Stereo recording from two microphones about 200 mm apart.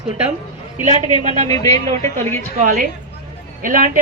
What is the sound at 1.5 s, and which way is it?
Speech, 15° left (ahead or behind).